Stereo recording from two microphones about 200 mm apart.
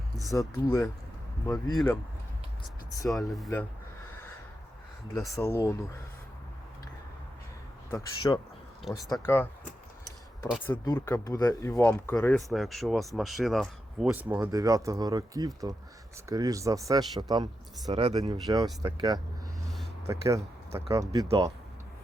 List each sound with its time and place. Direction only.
0.3 s speech: 15° left (ahead or behind)
3.1 s speech: centre (ahead or behind)
5.3 s speech: 10° left (ahead or behind)
7.9 s speech: 20° left (ahead or behind)
10.8 s speech: 15° left (ahead or behind); by 21.2 s 15° right (ahead or behind)